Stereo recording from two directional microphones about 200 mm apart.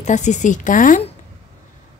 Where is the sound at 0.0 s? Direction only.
35° left (ahead or behind).